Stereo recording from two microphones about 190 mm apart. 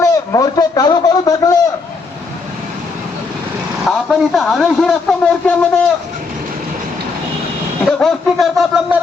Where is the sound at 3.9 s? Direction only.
Centre (ahead or behind).